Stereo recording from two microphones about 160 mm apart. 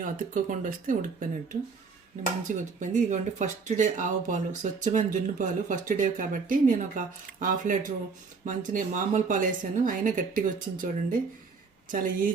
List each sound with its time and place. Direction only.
0.0 s a woman's voice: 60° right (ahead or behind)